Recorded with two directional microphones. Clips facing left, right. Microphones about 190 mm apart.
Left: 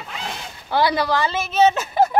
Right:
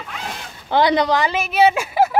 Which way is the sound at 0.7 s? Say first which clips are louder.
Right 3 dB; 20° right (ahead or behind).